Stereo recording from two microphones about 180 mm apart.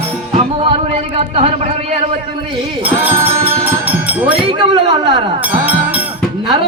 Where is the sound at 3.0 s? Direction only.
10° right (ahead or behind).